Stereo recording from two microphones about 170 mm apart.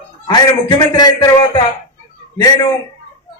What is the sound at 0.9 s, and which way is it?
Speech, 25° left (ahead or behind).